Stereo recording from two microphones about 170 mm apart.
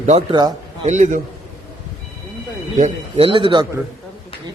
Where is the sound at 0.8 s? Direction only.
45° right (ahead or behind).